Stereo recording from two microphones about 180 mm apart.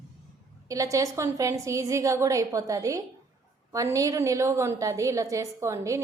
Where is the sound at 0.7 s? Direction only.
20° right (ahead or behind).